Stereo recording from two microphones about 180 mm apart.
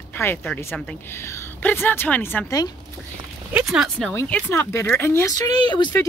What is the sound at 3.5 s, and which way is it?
Speech, 5° right (ahead or behind).